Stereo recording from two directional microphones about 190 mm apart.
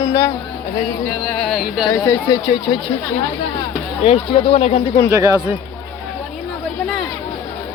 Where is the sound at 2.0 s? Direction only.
20° left (ahead or behind).